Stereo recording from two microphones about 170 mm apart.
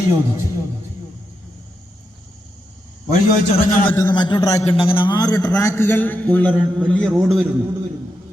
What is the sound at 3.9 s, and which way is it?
Speech, 10° left (ahead or behind).